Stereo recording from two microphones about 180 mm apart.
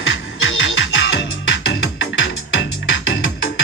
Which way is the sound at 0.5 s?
90° left.